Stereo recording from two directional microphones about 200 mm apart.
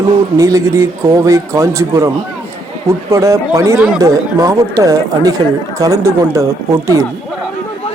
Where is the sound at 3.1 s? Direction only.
15° right (ahead or behind).